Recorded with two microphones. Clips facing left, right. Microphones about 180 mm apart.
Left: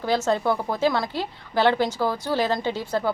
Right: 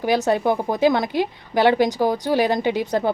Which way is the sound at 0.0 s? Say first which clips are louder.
Right 3 dB; 15° right (ahead or behind).